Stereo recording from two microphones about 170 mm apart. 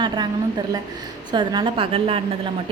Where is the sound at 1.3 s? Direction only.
25° right (ahead or behind).